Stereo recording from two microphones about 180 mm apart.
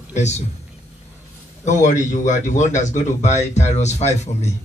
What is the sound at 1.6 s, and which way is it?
Speech, 40° left (ahead or behind).